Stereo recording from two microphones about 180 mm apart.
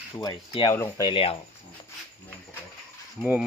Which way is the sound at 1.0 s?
30° left (ahead or behind).